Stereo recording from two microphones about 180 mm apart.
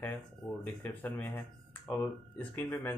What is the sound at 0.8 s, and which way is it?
Speech, 10° left (ahead or behind).